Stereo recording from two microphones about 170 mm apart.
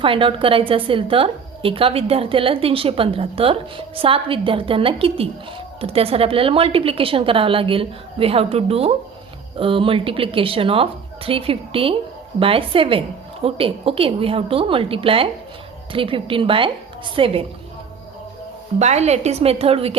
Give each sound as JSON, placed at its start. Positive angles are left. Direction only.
{"t": 0.0, "sound": "a woman's voice", "side_deg": -30}
{"t": 18.8, "sound": "a woman's voice", "side_deg": -40}